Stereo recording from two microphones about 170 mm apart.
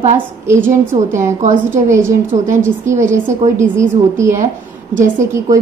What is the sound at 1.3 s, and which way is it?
A woman's voice, 45° right (ahead or behind).